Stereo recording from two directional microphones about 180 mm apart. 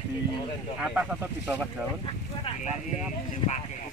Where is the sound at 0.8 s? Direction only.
5° right (ahead or behind).